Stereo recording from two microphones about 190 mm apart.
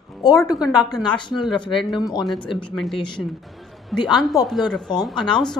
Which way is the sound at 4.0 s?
20° left (ahead or behind).